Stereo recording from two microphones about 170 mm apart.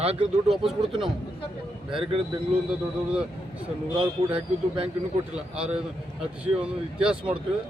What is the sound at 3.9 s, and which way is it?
Speech, 30° right (ahead or behind).